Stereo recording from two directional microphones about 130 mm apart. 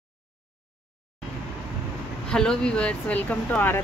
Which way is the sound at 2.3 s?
5° left (ahead or behind).